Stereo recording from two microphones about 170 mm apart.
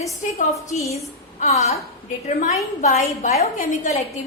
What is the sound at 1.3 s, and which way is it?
A woman's voice, 40° left (ahead or behind).